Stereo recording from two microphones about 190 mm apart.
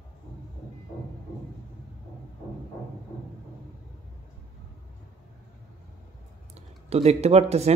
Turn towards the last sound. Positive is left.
turn(degrees=-35)  # may be behind; listen again after turning